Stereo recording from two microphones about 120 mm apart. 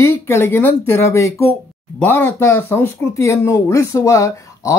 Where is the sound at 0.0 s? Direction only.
20° left (ahead or behind).